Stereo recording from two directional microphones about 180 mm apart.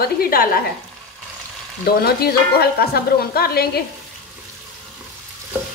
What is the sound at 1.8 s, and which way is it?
Speech, 60° left (ahead or behind).